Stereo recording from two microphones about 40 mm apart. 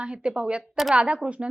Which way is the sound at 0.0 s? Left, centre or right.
Right.